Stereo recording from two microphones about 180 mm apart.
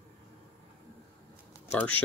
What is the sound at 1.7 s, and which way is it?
Speech, 10° left (ahead or behind).